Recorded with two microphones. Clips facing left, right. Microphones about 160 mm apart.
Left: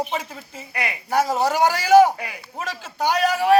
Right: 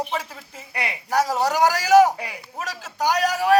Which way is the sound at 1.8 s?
30° right (ahead or behind).